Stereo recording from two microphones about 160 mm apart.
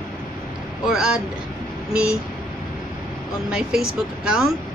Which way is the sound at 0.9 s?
5° right (ahead or behind).